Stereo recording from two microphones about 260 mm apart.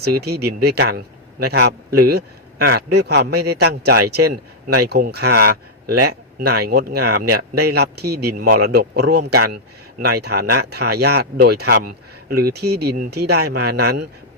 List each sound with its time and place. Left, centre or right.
0.0 s a man's voice: right